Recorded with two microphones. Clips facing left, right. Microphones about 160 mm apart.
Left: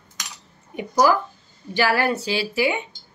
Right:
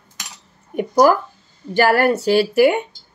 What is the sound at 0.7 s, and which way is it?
Speech, 50° right (ahead or behind).